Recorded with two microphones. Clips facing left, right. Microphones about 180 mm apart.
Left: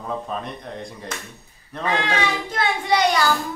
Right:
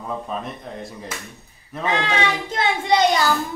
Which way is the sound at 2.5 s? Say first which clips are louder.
Right 2 dB; 25° right (ahead or behind).